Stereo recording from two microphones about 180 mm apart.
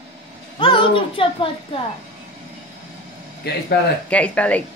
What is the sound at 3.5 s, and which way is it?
Speech, 65° left (ahead or behind).